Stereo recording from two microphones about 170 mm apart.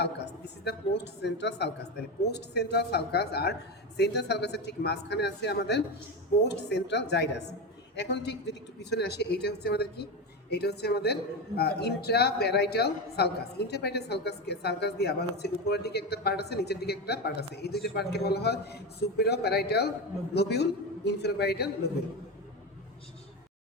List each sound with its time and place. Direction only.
0.0 s a man's voice: 80° left
6.5 s a man's voice: 90° left; by 21.7 s 70° left (ahead or behind)